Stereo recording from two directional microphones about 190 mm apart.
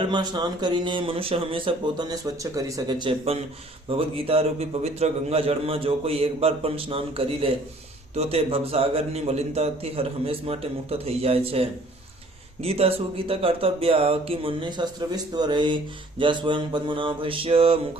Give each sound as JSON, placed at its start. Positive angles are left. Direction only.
{"t": 0.1, "sound": "a man's voice", "side_deg": -20}